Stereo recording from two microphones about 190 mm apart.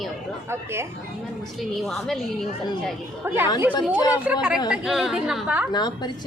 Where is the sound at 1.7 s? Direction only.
Centre (ahead or behind).